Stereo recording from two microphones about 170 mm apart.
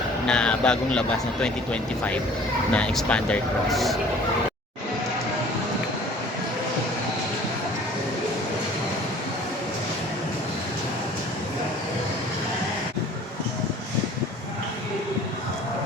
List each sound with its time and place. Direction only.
0.3 s speech: 5° left (ahead or behind)